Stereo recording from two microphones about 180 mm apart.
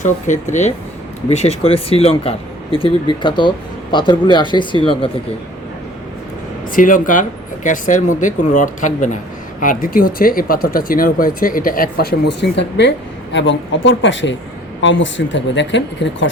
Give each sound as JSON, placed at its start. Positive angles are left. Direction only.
{"t": 0.0, "sound": "speech", "side_deg": 40}
{"t": 6.7, "sound": "speech", "side_deg": 50}
{"t": 13.3, "sound": "speech", "side_deg": 90}